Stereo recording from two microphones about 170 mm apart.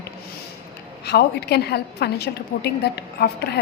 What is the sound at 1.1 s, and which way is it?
A woman's voice, 75° left (ahead or behind).